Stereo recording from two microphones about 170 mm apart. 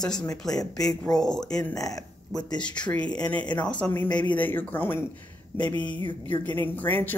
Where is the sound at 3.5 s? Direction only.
5° left (ahead or behind).